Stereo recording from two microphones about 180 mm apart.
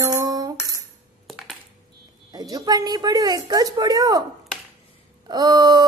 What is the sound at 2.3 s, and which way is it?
A woman's voice, 20° right (ahead or behind).